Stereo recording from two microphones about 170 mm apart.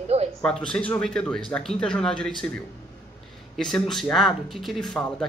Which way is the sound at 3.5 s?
5° left (ahead or behind).